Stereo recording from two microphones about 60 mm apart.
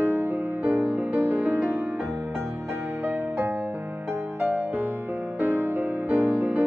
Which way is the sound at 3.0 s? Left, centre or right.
Right.